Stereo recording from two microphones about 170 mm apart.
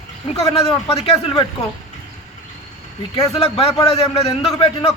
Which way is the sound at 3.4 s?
35° left (ahead or behind).